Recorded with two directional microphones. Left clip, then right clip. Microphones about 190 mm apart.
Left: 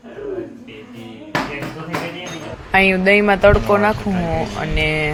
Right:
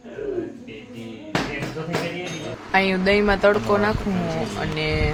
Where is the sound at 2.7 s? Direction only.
20° left (ahead or behind).